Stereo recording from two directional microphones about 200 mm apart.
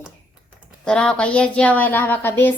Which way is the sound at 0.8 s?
5° left (ahead or behind).